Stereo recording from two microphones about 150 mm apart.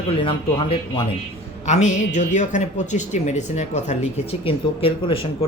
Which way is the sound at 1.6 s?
50° left (ahead or behind).